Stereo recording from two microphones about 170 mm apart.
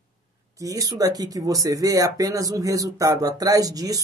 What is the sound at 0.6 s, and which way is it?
Speech, 20° right (ahead or behind).